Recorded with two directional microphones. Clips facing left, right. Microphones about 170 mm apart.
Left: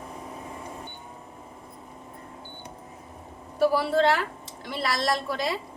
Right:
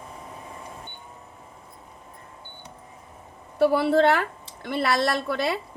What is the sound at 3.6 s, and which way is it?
A woman's voice, 60° right (ahead or behind).